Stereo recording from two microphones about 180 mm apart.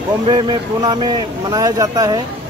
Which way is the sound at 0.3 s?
25° right (ahead or behind).